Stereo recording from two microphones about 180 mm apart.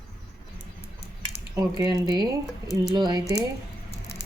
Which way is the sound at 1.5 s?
20° right (ahead or behind).